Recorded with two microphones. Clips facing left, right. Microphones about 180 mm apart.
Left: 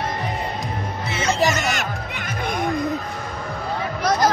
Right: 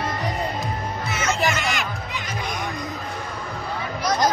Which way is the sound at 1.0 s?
30° left (ahead or behind).